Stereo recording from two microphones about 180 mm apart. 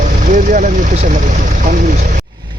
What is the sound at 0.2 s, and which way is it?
Speech, 45° right (ahead or behind).